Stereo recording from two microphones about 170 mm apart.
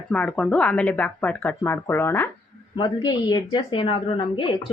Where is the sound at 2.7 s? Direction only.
25° left (ahead or behind).